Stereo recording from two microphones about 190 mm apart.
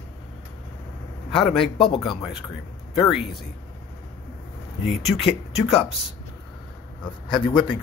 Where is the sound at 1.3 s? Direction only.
Centre (ahead or behind).